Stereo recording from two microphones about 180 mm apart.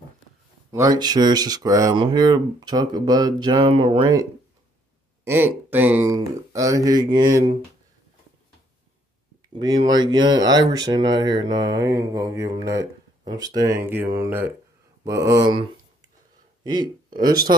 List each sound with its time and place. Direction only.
0.7 s speech: 20° right (ahead or behind)
5.2 s speech: 10° right (ahead or behind)
9.5 s speech: 25° right (ahead or behind)
16.6 s speech: 25° right (ahead or behind)